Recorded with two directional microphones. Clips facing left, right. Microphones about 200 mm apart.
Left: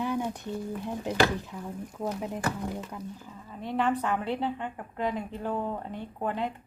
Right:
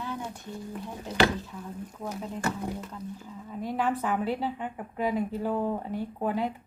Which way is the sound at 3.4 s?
5° right (ahead or behind).